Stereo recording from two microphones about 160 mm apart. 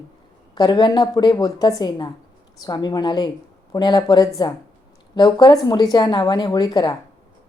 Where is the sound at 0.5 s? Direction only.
25° left (ahead or behind).